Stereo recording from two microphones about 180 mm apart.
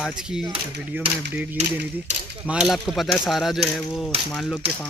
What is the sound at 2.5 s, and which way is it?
Speech, 5° right (ahead or behind).